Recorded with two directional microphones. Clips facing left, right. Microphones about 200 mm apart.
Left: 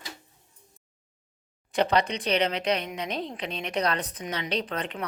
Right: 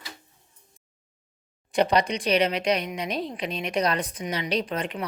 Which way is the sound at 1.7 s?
15° right (ahead or behind).